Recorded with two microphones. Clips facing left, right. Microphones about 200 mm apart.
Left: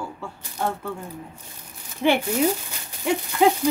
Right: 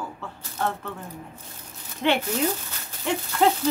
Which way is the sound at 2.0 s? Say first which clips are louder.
Left 3 dB; 10° left (ahead or behind).